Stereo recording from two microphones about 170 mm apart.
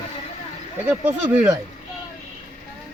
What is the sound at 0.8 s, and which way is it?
Speech, 10° right (ahead or behind).